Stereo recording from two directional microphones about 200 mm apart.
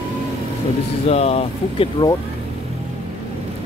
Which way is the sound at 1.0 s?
30° left (ahead or behind).